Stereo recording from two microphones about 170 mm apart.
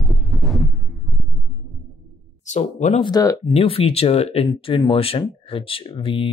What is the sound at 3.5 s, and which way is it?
Speech, 35° left (ahead or behind).